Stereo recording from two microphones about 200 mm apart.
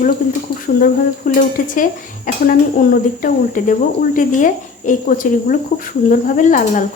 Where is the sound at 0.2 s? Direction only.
40° left (ahead or behind).